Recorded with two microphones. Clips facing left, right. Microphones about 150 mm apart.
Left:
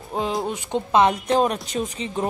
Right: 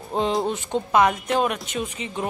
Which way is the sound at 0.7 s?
25° left (ahead or behind).